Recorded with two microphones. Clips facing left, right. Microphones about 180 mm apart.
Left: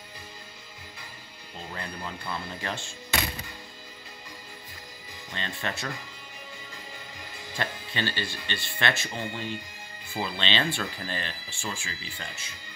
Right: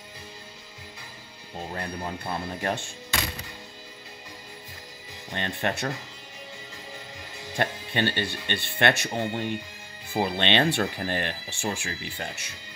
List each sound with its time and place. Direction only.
1.7 s speech: 40° right (ahead or behind)
5.3 s speech: 55° right (ahead or behind)
7.5 s speech: 55° right (ahead or behind)